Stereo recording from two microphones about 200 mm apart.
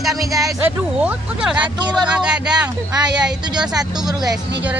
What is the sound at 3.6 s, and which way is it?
Speech, 20° right (ahead or behind).